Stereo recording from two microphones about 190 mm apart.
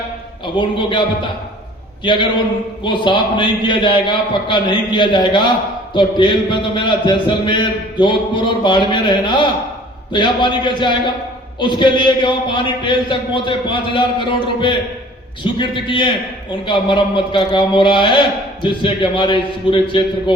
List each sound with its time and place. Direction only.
0.4 s a man's voice: 25° left (ahead or behind)